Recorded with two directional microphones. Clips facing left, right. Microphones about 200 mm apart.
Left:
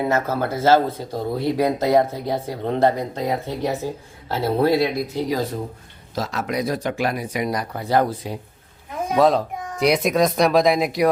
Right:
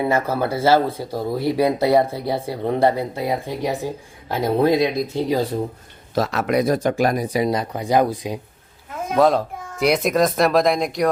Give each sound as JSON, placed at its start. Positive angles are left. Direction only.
{"t": 0.1, "sound": "speech", "side_deg": -10}
{"t": 6.1, "sound": "speech", "side_deg": -60}
{"t": 9.1, "sound": "a child's voice", "side_deg": 0}